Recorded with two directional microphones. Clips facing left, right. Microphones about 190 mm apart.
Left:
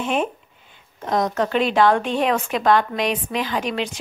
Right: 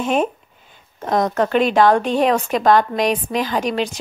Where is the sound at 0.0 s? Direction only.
40° right (ahead or behind).